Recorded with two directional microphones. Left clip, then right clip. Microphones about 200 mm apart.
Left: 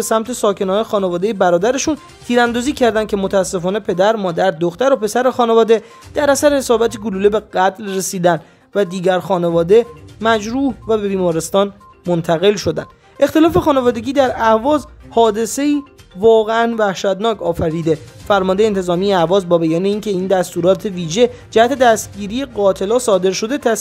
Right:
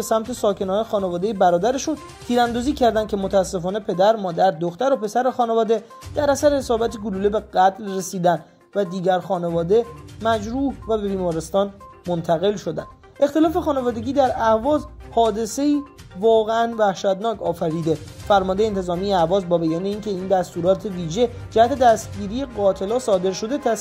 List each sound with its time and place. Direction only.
0.0 s speech: 15° left (ahead or behind)